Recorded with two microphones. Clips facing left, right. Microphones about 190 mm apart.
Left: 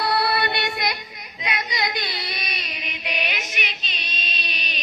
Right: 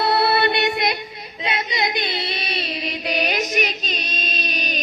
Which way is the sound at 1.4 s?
25° right (ahead or behind).